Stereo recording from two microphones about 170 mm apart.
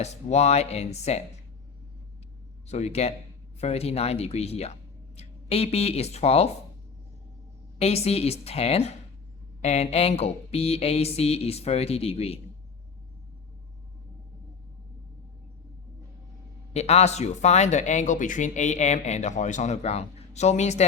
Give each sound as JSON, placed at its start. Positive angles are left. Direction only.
{"t": 0.0, "sound": "speech", "side_deg": 40}
{"t": 2.6, "sound": "speech", "side_deg": 40}
{"t": 7.8, "sound": "speech", "side_deg": 35}
{"t": 16.7, "sound": "speech", "side_deg": 40}